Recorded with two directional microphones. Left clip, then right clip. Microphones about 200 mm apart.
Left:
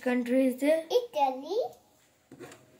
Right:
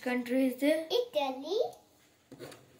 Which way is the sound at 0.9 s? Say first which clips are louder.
Left 4 dB; 10° right (ahead or behind).